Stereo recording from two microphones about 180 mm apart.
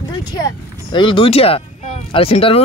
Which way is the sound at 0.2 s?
20° left (ahead or behind).